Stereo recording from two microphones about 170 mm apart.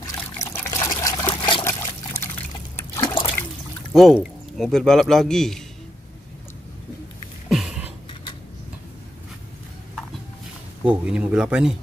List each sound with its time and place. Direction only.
0.0 s trickle: 20° left (ahead or behind)
0.6 s liquid: 15° left (ahead or behind)
0.9 s trickle: 25° left (ahead or behind)
1.6 s trickle: 15° left (ahead or behind)
3.9 s speech: 5° right (ahead or behind)
7.4 s a sound: centre (ahead or behind)
10.8 s speech: 5° right (ahead or behind)